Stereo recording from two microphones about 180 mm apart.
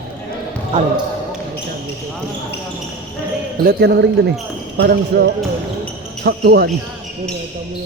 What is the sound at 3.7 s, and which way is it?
Speech, 65° right (ahead or behind).